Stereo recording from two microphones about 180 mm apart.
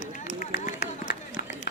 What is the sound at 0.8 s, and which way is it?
Run, 65° left (ahead or behind).